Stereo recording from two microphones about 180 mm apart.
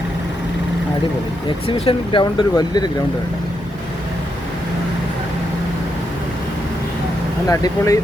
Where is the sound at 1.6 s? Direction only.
30° left (ahead or behind).